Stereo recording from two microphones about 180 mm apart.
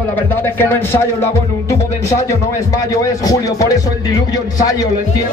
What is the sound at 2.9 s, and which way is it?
Speech, 20° left (ahead or behind).